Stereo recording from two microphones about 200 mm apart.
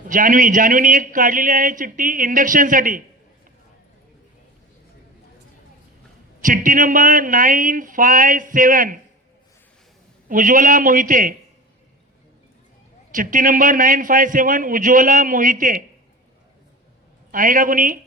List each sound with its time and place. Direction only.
0.1 s a man's voice: 45° right (ahead or behind)
6.4 s a man's voice: 40° right (ahead or behind)
10.2 s a man's voice: 40° right (ahead or behind)
13.1 s a man's voice: 40° right (ahead or behind)
17.3 s a man's voice: 40° right (ahead or behind)